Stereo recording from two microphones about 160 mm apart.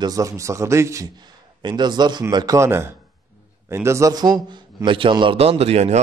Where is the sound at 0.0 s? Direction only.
20° right (ahead or behind).